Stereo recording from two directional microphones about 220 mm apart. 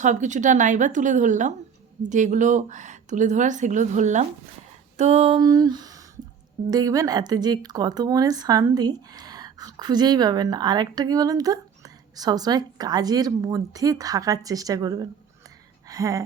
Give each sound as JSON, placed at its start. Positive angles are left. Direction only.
{"t": 0.0, "sound": "a woman's voice", "side_deg": -35}
{"t": 4.9, "sound": "a sound", "side_deg": -30}
{"t": 6.7, "sound": "speech", "side_deg": -15}